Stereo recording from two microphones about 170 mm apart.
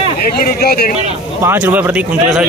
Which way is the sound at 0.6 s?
65° left (ahead or behind).